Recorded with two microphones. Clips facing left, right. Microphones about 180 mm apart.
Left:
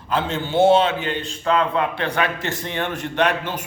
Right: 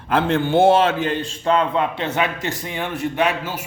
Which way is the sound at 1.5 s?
25° right (ahead or behind).